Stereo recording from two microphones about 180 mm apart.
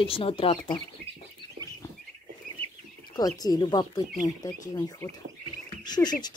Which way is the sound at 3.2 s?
20° left (ahead or behind).